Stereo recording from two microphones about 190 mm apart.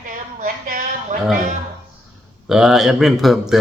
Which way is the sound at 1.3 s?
45° right (ahead or behind).